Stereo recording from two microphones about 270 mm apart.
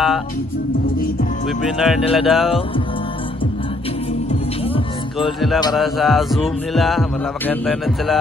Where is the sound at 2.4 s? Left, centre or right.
Centre.